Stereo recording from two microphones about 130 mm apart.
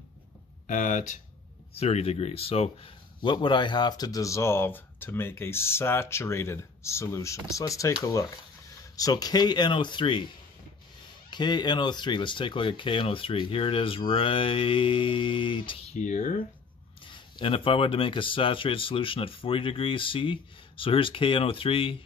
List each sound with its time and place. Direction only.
0.7 s speech: 85° left
1.8 s speech: 50° left (ahead or behind)
3.2 s speech: 35° left (ahead or behind)
11.2 s speech: 35° left (ahead or behind)
15.9 s speech: 65° left (ahead or behind)
17.0 s speech: 40° left (ahead or behind)